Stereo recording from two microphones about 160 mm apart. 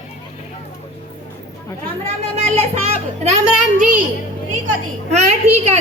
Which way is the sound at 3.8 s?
55° right (ahead or behind).